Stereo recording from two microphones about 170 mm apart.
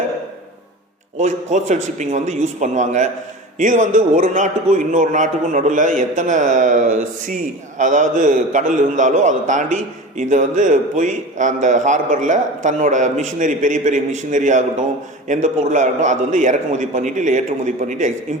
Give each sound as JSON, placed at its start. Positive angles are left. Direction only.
{"t": 1.2, "sound": "a man's voice", "side_deg": -45}